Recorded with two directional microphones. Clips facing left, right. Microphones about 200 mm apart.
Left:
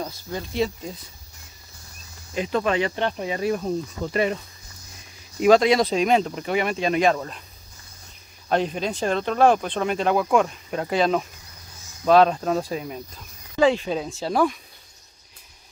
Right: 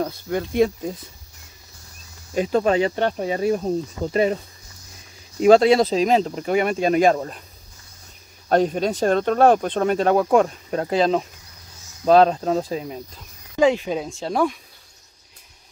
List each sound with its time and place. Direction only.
0.0 s speech: 60° right (ahead or behind)
2.3 s speech: 40° right (ahead or behind)
5.4 s speech: 30° right (ahead or behind)
8.5 s speech: 45° right (ahead or behind); by 13.0 s 25° right (ahead or behind)
13.6 s speech: 15° right (ahead or behind)
14.0 s speech: centre (ahead or behind)